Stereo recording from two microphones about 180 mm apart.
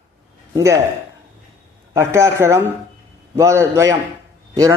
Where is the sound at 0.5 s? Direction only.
15° right (ahead or behind).